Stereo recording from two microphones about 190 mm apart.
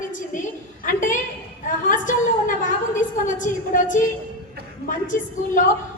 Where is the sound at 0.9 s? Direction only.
40° left (ahead or behind).